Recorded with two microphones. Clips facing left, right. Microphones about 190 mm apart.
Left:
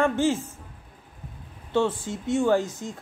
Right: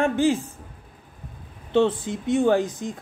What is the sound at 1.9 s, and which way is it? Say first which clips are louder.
A woman's voice: right 3 dB; 20° right (ahead or behind).